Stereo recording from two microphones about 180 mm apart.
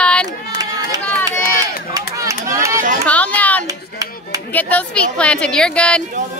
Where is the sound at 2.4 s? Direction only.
15° right (ahead or behind).